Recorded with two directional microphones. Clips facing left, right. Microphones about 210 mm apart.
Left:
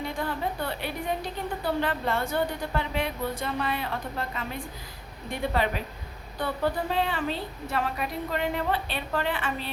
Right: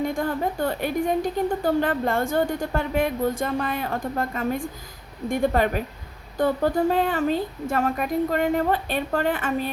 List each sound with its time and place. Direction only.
0.0 s a woman's voice: 45° right (ahead or behind)